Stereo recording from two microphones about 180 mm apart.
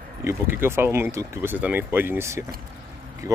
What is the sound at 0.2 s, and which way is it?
Speech, 15° right (ahead or behind).